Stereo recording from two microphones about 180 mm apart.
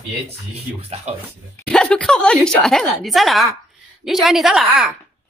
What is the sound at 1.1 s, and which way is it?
Speech, 35° right (ahead or behind).